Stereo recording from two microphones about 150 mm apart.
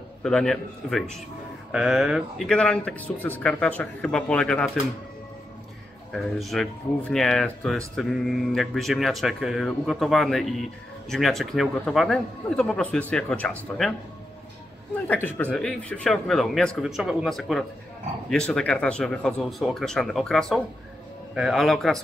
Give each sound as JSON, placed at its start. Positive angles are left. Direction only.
{"t": 0.2, "sound": "speech", "side_deg": 5}
{"t": 6.1, "sound": "speech", "side_deg": 0}
{"t": 15.0, "sound": "speech", "side_deg": 10}